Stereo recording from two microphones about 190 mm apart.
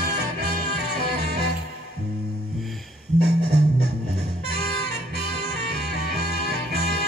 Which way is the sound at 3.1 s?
60° right (ahead or behind).